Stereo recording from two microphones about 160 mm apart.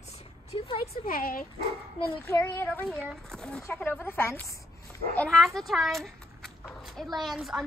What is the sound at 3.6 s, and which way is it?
Speech, 15° left (ahead or behind).